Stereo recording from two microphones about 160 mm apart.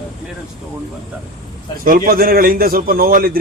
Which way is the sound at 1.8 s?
60° right (ahead or behind).